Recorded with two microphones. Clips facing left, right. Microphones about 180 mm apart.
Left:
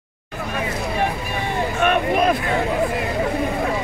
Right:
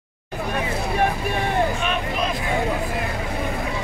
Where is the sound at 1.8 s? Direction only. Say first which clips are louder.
Left 7 dB; 55° left (ahead or behind).